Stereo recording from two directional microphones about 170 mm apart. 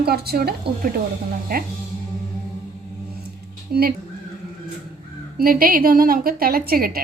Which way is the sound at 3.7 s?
60° right (ahead or behind).